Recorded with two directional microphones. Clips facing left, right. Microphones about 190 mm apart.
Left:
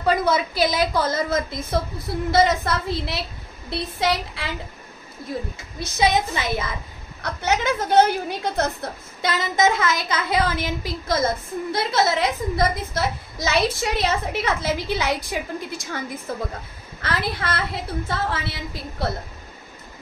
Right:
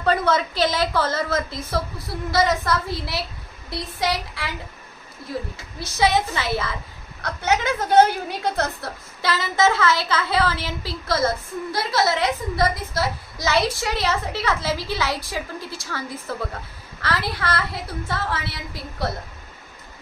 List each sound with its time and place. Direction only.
0.0 s a woman's voice: 10° left (ahead or behind)
5.8 s a woman's voice: 20° left (ahead or behind)
17.4 s a woman's voice: 20° left (ahead or behind)